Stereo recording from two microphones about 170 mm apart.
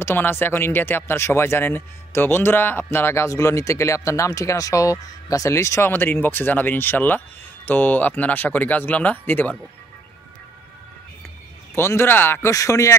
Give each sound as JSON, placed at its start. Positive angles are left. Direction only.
{"t": 0.0, "sound": "speech", "side_deg": 15}
{"t": 11.7, "sound": "speech", "side_deg": 15}